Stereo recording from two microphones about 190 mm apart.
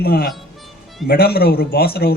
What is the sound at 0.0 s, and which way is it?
A man's voice, 55° left (ahead or behind).